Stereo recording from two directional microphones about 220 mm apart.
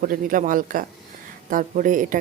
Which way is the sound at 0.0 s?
40° right (ahead or behind).